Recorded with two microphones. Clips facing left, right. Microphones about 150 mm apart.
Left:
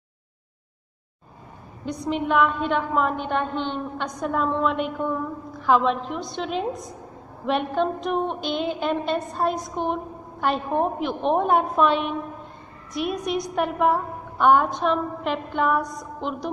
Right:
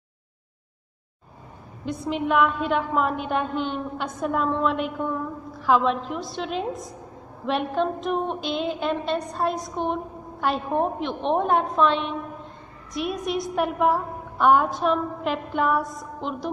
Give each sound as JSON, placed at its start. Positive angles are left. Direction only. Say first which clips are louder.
{"t": 1.9, "sound": "a woman's voice", "louder": "even", "side_deg": 0}